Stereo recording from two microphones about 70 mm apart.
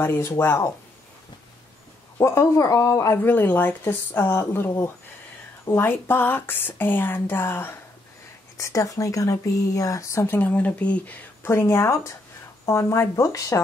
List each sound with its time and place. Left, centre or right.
0.0 s speech: left
2.1 s speech: left
3.2 s speech: left
8.5 s speech: left
10.2 s speech: left
11.4 s speech: left